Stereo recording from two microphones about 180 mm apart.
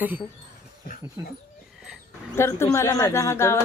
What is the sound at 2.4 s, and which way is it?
A woman's voice, 15° left (ahead or behind).